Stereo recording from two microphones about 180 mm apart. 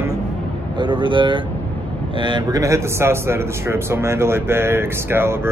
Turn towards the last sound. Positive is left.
turn(degrees=-15)  # may be behind; listen again after turning